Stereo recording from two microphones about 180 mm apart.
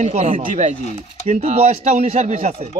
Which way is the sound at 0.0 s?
40° right (ahead or behind).